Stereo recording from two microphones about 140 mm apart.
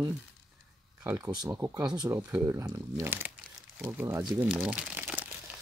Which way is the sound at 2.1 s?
15° right (ahead or behind).